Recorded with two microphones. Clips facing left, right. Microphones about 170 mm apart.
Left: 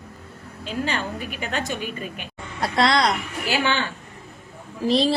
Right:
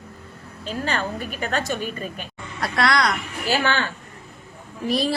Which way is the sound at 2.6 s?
25° left (ahead or behind).